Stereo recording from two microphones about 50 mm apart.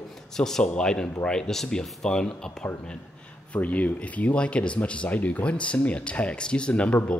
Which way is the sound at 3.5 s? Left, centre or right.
Left.